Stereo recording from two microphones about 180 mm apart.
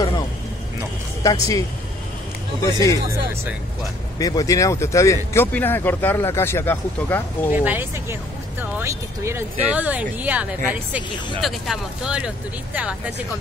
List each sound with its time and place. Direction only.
1.2 s speech: 20° left (ahead or behind)
2.6 s speech: 20° left (ahead or behind)
4.2 s speech: 20° left (ahead or behind)
7.5 s speech: 10° right (ahead or behind)